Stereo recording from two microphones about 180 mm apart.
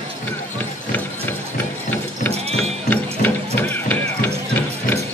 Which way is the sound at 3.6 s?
10° left (ahead or behind).